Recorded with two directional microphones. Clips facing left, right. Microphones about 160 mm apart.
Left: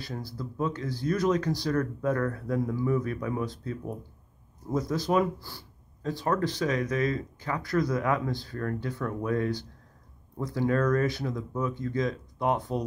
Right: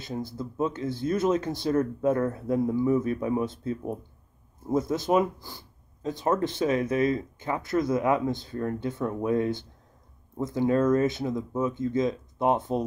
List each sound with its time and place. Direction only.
0.0 s speech: 20° right (ahead or behind)